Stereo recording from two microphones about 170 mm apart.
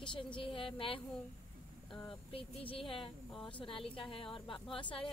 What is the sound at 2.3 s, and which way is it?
Speech, 35° left (ahead or behind).